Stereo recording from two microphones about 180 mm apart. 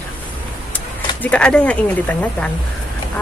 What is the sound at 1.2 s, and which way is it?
Speech, 5° left (ahead or behind).